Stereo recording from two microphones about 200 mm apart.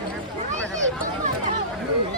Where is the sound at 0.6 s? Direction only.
5° left (ahead or behind).